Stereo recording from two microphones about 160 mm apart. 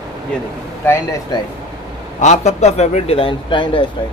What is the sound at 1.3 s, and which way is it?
Speech, 25° left (ahead or behind).